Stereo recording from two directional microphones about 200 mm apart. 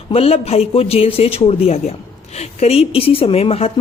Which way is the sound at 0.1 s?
30° left (ahead or behind).